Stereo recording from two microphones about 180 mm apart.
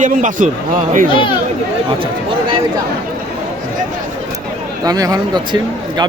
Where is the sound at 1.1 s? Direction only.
30° left (ahead or behind).